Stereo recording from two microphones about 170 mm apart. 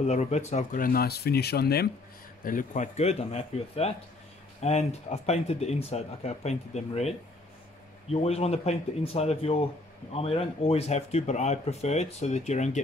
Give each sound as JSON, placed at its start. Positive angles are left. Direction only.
{"t": 0.0, "sound": "speech", "side_deg": 40}
{"t": 2.4, "sound": "speech", "side_deg": 50}